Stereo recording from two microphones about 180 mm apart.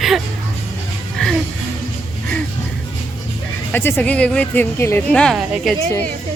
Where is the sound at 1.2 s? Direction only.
5° left (ahead or behind).